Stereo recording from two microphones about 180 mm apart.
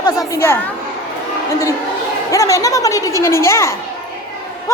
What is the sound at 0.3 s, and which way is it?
Speech, 10° left (ahead or behind).